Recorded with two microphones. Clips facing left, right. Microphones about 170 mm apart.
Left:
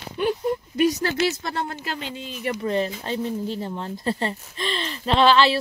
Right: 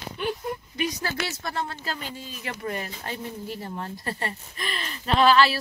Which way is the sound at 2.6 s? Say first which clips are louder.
Left 7 dB; 25° left (ahead or behind).